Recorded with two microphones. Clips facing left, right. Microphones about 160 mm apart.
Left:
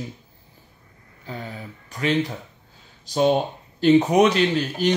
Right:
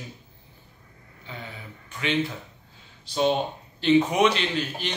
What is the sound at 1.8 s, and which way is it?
Speech, 40° left (ahead or behind).